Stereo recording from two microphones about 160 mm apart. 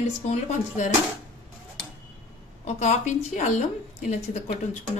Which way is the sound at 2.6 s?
50° left (ahead or behind).